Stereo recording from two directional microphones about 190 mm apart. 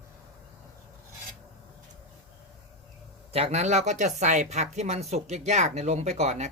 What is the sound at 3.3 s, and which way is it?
Speech, 30° right (ahead or behind).